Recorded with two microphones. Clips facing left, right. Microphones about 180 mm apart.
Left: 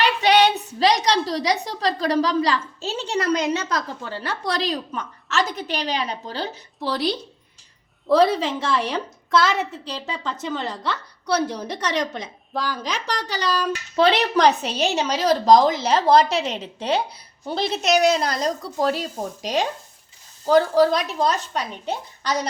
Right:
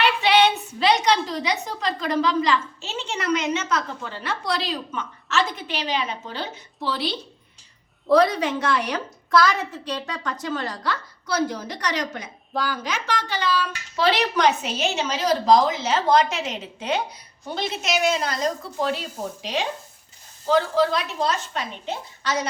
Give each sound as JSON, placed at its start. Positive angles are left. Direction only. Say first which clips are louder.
{"t": 0.2, "sound": "a woman's voice", "louder": "left 2 dB", "side_deg": 40}
{"t": 8.1, "sound": "a woman's voice", "louder": "left 1 dB", "side_deg": 25}
{"t": 12.5, "sound": "speech", "louder": "even", "side_deg": 0}
{"t": 13.2, "sound": "a woman's voice", "louder": "left 1 dB", "side_deg": 40}
{"t": 13.9, "sound": "a woman's voice", "louder": "left 3 dB", "side_deg": 25}